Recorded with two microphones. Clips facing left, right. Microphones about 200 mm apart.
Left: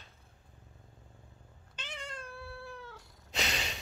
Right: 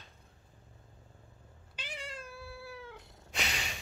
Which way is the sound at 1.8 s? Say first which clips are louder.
Even; 5° right (ahead or behind).